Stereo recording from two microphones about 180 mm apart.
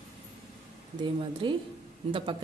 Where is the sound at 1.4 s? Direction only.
25° right (ahead or behind).